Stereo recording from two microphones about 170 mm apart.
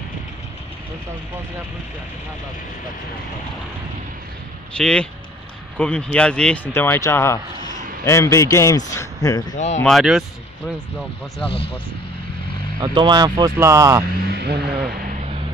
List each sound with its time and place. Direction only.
4.7 s speech: 5° left (ahead or behind)
9.8 s speech: centre (ahead or behind)
11.4 s speech: 35° left (ahead or behind)
12.8 s speech: 25° right (ahead or behind)
14.3 s speech: 70° right (ahead or behind)
14.9 s vehicle: 60° right (ahead or behind)